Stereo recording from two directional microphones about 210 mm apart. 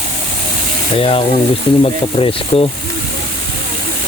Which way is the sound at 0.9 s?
25° left (ahead or behind).